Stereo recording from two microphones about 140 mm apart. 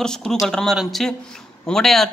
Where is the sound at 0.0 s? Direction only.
5° left (ahead or behind).